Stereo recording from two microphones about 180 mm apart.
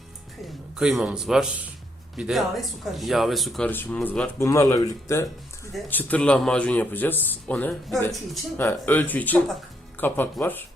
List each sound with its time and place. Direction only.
0.4 s a man's voice: centre (ahead or behind)
3.7 s speech: 10° left (ahead or behind)